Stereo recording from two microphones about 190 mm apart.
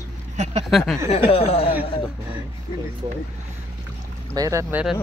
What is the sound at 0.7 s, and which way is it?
Speech, centre (ahead or behind).